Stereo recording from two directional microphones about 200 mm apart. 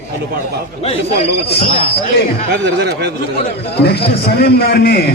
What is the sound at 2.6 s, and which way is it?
Speech, 55° right (ahead or behind).